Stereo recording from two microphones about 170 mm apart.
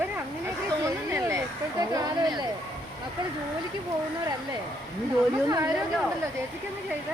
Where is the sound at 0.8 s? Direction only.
15° right (ahead or behind).